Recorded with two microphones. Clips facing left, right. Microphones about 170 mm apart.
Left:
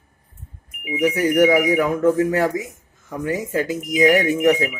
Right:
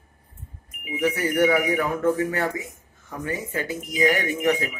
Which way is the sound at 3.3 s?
90° left.